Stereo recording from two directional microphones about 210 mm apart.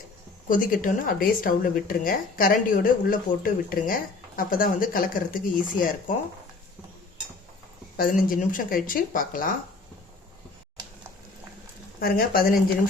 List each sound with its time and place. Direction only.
0.4 s speech: 40° left (ahead or behind)
7.9 s speech: 45° left (ahead or behind)
11.9 s speech: 45° left (ahead or behind)